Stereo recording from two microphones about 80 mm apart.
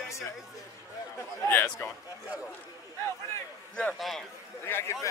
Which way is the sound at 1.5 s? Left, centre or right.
Left.